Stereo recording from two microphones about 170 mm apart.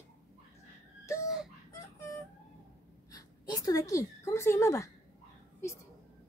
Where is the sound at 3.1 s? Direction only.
20° left (ahead or behind).